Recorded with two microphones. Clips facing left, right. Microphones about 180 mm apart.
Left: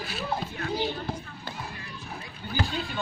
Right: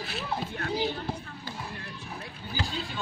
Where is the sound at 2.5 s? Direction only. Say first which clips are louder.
Left 4 dB; 60° left (ahead or behind).